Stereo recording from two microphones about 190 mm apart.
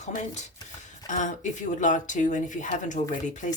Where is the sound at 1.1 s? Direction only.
40° left (ahead or behind).